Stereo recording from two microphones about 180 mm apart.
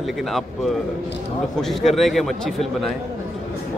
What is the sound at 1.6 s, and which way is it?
Speech, centre (ahead or behind).